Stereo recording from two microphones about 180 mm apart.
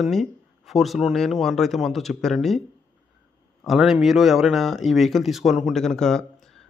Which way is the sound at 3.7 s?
5° right (ahead or behind).